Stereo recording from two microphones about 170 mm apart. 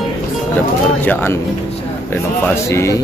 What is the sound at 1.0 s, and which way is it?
Speech, 10° left (ahead or behind).